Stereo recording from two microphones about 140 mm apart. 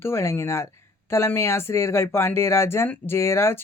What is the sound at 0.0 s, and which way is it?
Speech, 20° left (ahead or behind).